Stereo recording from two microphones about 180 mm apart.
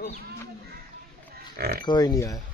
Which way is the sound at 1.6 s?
60° right (ahead or behind).